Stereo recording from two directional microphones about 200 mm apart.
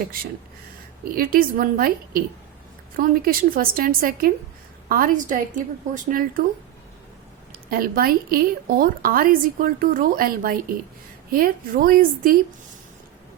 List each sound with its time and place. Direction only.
1.0 s a woman's voice: 45° right (ahead or behind)
7.7 s a woman's voice: 50° right (ahead or behind)